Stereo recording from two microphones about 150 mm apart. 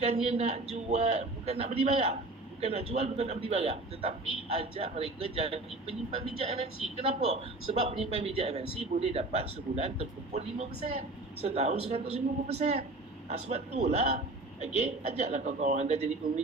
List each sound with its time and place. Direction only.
0.0 s a man's voice: 45° right (ahead or behind)